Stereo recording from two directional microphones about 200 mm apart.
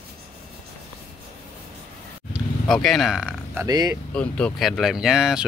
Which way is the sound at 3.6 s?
20° right (ahead or behind).